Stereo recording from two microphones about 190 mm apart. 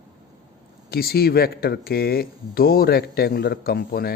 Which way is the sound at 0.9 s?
55° left (ahead or behind).